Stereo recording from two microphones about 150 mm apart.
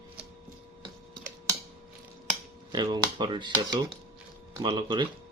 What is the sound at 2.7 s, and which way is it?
Speech, 30° right (ahead or behind).